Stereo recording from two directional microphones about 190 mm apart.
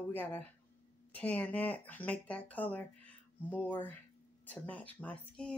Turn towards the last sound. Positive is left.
turn(degrees=5)  # may be behind; listen again after turning